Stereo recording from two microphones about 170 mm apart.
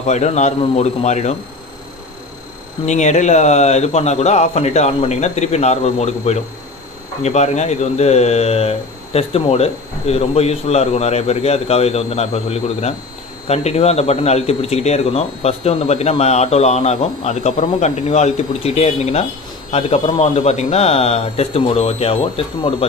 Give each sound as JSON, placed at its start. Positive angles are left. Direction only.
{"t": 0.0, "sound": "speech", "side_deg": 40}
{"t": 2.8, "sound": "speech", "side_deg": 45}